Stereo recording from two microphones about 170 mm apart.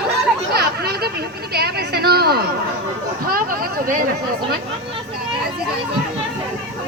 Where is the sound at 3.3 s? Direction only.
55° right (ahead or behind).